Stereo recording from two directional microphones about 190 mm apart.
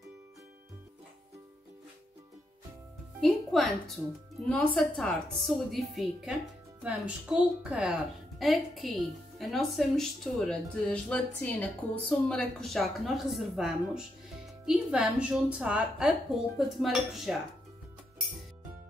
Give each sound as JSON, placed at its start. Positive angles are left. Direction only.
{"t": 3.2, "sound": "a woman's voice", "side_deg": 0}